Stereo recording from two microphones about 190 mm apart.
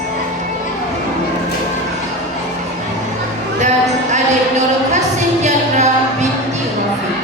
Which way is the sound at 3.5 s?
40° right (ahead or behind).